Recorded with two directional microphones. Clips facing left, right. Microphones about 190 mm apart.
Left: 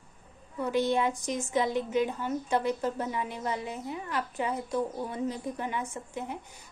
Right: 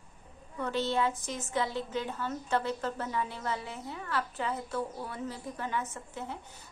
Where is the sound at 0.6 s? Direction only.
15° left (ahead or behind).